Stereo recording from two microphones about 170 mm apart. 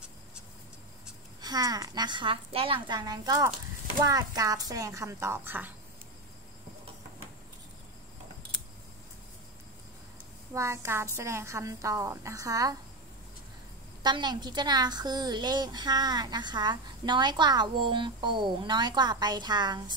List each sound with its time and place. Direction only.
1.4 s a woman's voice: 25° right (ahead or behind)
10.5 s a child's voice: 15° right (ahead or behind)
14.0 s a woman's voice: 25° right (ahead or behind)